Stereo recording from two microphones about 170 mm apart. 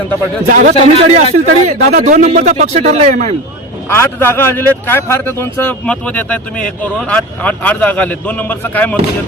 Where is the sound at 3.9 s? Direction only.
15° left (ahead or behind).